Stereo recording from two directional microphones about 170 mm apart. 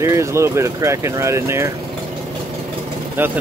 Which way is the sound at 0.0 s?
15° right (ahead or behind).